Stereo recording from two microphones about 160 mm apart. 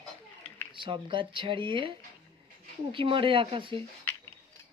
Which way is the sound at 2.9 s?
35° right (ahead or behind).